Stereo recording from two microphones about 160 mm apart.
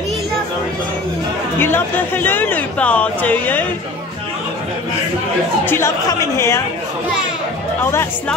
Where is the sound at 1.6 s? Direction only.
15° left (ahead or behind).